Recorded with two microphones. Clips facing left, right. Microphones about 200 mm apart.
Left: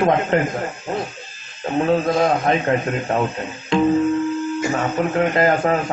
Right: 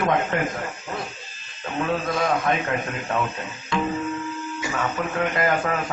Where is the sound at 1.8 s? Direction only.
30° left (ahead or behind).